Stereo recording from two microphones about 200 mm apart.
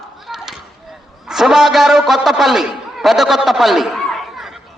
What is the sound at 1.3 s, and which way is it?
A man's voice, centre (ahead or behind).